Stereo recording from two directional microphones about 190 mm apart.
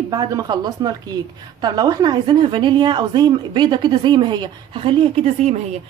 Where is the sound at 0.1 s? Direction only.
20° right (ahead or behind).